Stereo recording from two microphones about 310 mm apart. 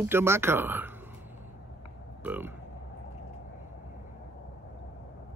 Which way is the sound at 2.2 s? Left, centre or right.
Centre.